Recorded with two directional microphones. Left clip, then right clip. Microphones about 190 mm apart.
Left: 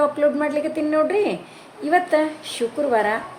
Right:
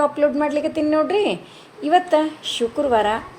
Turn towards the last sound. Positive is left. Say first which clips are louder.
# right 2 dB
turn(degrees=-15)  # may be behind; listen again after turning